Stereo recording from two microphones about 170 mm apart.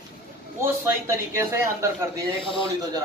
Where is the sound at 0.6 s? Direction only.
15° right (ahead or behind).